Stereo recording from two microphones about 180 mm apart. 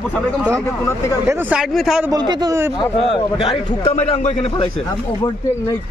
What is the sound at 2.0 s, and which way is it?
Speech, 20° right (ahead or behind).